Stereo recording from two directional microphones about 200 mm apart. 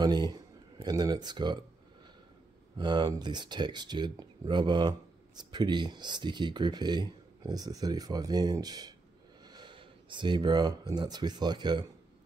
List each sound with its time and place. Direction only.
0.0 s speech: 20° right (ahead or behind)
2.8 s speech: 20° right (ahead or behind)